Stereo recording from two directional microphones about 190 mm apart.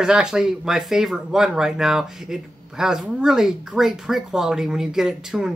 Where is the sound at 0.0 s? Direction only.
5° right (ahead or behind).